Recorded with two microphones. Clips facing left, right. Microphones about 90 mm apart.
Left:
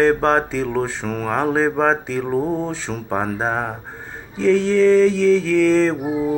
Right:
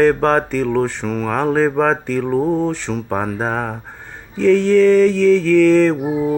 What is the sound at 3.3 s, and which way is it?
Speech, 25° left (ahead or behind).